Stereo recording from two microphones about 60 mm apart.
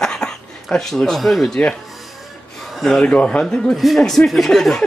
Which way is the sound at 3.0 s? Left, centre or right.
Centre.